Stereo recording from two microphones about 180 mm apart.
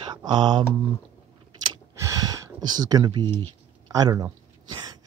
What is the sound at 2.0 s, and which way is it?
Gasp, 20° right (ahead or behind).